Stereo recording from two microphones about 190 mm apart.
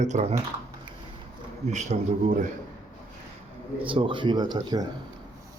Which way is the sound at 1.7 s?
40° right (ahead or behind).